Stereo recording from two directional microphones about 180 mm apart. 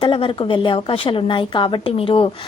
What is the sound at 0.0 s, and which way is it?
A woman's voice, 30° left (ahead or behind).